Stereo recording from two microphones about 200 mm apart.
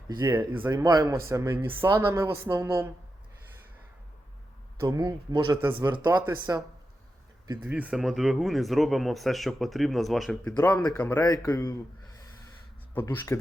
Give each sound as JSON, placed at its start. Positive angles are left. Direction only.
{"t": 0.1, "sound": "a woman's voice", "side_deg": -20}
{"t": 4.8, "sound": "a woman's voice", "side_deg": -15}
{"t": 7.6, "sound": "speech", "side_deg": -5}
{"t": 13.1, "sound": "speech", "side_deg": 15}